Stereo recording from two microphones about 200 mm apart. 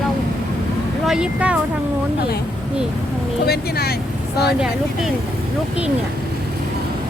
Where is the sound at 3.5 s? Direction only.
50° left (ahead or behind).